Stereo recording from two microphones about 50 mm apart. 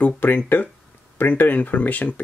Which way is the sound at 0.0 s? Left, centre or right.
Left.